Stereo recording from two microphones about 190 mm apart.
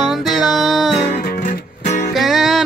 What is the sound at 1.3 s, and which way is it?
Music, 45° left (ahead or behind).